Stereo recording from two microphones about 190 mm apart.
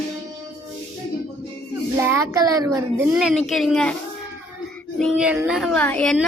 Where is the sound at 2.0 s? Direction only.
15° right (ahead or behind).